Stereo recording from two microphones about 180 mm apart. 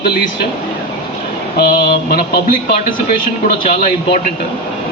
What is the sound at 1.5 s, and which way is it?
Speech, 60° left (ahead or behind).